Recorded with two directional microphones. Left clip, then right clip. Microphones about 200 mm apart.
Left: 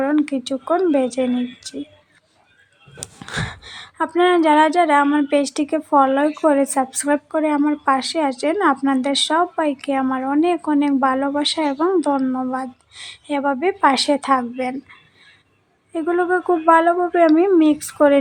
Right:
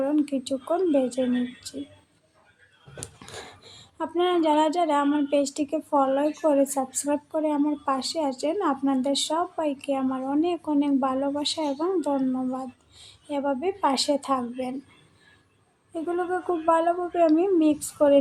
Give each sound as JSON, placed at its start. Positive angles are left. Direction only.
{"t": 0.0, "sound": "speech", "side_deg": 15}
{"t": 3.0, "sound": "speech", "side_deg": 10}
{"t": 15.9, "sound": "speech", "side_deg": 15}